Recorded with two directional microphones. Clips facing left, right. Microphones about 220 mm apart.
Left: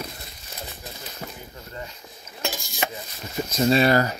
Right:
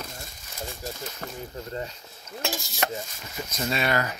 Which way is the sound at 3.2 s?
30° left (ahead or behind).